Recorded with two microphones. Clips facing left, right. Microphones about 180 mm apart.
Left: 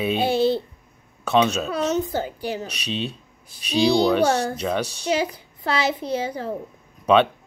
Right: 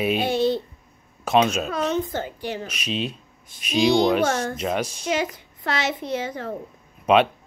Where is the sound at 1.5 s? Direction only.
35° left (ahead or behind).